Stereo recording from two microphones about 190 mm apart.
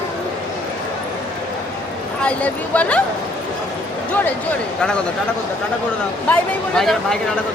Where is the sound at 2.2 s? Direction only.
5° left (ahead or behind).